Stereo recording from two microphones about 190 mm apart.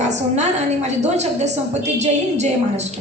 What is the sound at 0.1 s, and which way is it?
A woman's voice, 35° right (ahead or behind).